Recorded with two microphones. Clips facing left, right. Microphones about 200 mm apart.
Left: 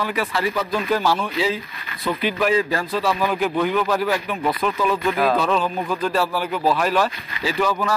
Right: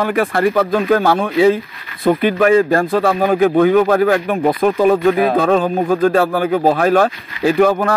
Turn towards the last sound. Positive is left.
turn(degrees=-55)  # may be behind; listen again after turning